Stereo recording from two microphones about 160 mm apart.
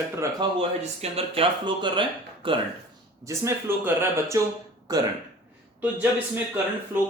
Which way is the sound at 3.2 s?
20° right (ahead or behind).